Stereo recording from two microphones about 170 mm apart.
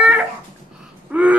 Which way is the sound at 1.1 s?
5° right (ahead or behind).